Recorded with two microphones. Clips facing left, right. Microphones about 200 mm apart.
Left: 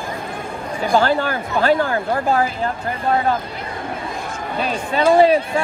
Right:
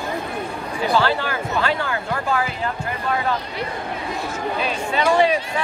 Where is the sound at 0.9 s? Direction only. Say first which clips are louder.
Left 4 dB; 45° left (ahead or behind).